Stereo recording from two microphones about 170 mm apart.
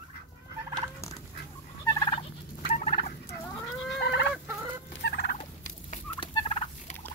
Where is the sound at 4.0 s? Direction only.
80° left.